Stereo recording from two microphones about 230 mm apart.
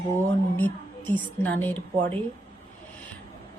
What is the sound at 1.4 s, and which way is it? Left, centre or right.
Speech, centre.